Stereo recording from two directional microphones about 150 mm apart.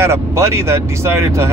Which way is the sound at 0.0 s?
20° right (ahead or behind).